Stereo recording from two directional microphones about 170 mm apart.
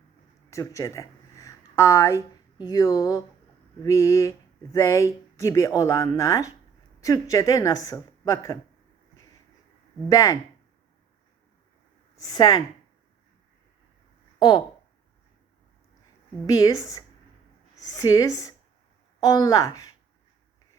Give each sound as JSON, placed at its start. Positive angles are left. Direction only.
{"t": 0.5, "sound": "speech", "side_deg": 20}
{"t": 3.8, "sound": "a sound", "side_deg": 20}
{"t": 4.7, "sound": "speech", "side_deg": 20}
{"t": 10.1, "sound": "speech", "side_deg": 20}
{"t": 12.1, "sound": "speech", "side_deg": 25}
{"t": 14.3, "sound": "speech", "side_deg": 25}
{"t": 16.5, "sound": "speech", "side_deg": 20}